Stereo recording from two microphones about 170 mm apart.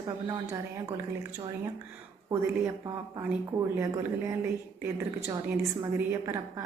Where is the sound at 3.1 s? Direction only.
15° right (ahead or behind).